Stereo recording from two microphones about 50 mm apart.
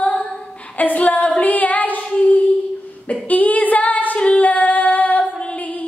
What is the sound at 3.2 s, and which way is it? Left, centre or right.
Female singing, left.